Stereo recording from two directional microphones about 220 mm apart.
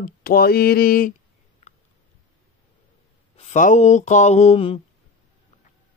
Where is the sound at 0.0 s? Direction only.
40° left (ahead or behind).